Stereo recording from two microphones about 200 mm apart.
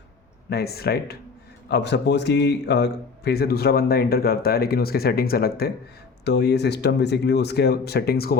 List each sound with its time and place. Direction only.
0.5 s a man's voice: 50° left (ahead or behind)